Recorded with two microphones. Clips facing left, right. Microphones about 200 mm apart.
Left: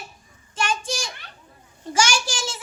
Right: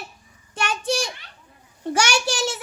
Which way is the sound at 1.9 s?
65° right (ahead or behind).